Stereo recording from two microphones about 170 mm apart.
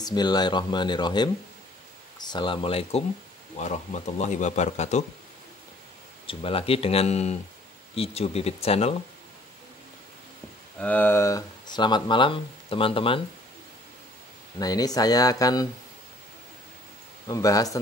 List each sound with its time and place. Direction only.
0.0 s speech: 25° left (ahead or behind); by 5.0 s 45° left (ahead or behind)
6.2 s speech: 35° left (ahead or behind)
10.8 s speech: 10° left (ahead or behind); by 13.2 s 30° left (ahead or behind)
14.6 s speech: 20° left (ahead or behind)
17.3 s speech: 20° left (ahead or behind)